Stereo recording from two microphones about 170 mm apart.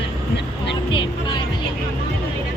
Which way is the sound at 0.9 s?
30° left (ahead or behind).